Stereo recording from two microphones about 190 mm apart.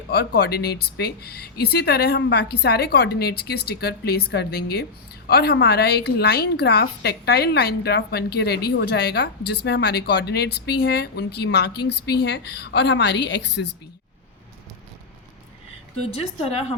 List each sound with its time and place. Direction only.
0.1 s a woman's voice: 55° left (ahead or behind)